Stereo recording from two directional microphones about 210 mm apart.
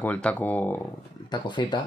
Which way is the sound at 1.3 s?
20° left (ahead or behind).